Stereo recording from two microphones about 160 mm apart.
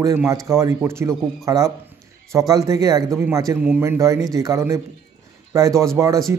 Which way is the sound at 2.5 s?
20° right (ahead or behind).